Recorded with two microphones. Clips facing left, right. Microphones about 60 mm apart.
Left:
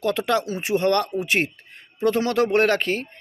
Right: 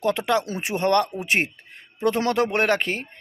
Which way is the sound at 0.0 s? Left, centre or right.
Right.